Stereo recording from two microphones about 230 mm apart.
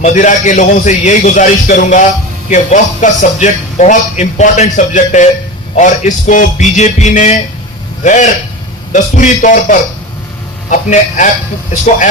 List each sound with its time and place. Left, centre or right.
0.0 s a man's voice: left